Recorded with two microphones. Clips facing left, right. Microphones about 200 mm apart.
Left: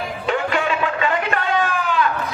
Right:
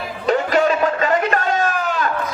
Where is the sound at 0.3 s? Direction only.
40° right (ahead or behind).